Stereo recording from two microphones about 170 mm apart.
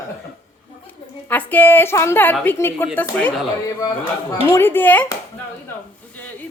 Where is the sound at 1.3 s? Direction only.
10° left (ahead or behind).